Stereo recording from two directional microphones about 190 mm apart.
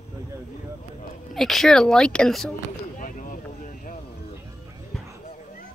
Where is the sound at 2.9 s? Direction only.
45° left (ahead or behind).